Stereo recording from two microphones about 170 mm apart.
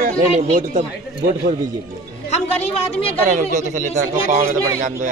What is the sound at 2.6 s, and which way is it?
Speech, 35° left (ahead or behind).